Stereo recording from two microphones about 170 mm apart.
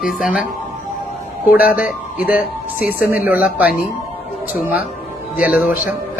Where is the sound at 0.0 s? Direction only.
5° right (ahead or behind).